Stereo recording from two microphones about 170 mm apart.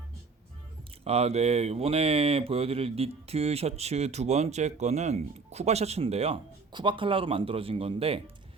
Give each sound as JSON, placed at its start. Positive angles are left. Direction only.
{"t": 1.0, "sound": "speech", "side_deg": -35}